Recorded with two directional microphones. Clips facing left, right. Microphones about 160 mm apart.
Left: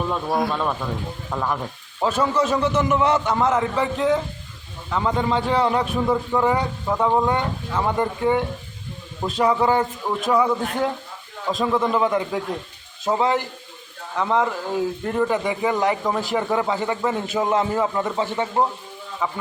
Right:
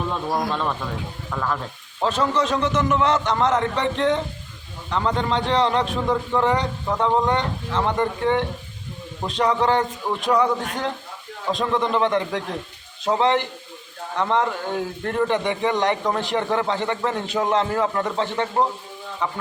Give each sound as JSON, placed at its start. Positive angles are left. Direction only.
{"t": 0.3, "sound": "a man's voice", "side_deg": 5}
{"t": 1.3, "sound": "a man's voice", "side_deg": 15}